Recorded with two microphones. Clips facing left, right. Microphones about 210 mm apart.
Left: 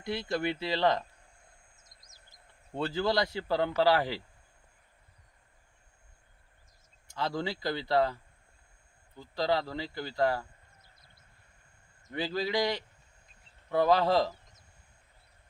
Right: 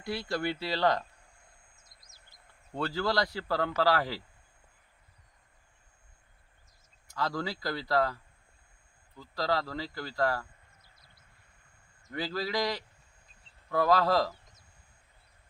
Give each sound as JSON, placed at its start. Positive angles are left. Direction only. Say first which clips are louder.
{"t": 0.0, "sound": "speech", "louder": "left 1 dB", "side_deg": 20}
{"t": 2.7, "sound": "speech", "louder": "left 1 dB", "side_deg": 25}
{"t": 7.1, "sound": "speech", "louder": "even", "side_deg": 25}
{"t": 12.1, "sound": "speech", "louder": "left 2 dB", "side_deg": 25}